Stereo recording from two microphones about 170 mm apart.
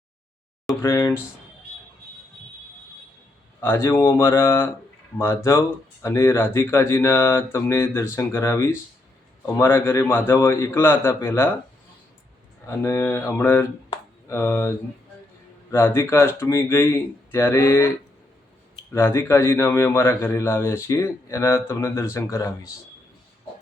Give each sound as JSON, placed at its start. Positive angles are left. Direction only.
{"t": 0.8, "sound": "a sound", "side_deg": 15}
{"t": 3.6, "sound": "a man's voice", "side_deg": 15}
{"t": 12.6, "sound": "a man's voice", "side_deg": 15}
{"t": 18.9, "sound": "a man's voice", "side_deg": 15}